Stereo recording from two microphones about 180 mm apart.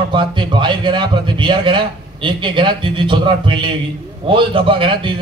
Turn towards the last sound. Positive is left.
turn(degrees=-30)  # may be behind; listen again after turning